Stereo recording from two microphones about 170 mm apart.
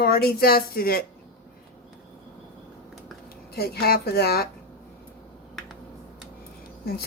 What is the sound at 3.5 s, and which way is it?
Speech, 65° left (ahead or behind).